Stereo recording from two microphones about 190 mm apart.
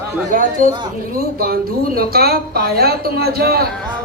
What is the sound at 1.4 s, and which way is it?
A woman's voice, 55° right (ahead or behind).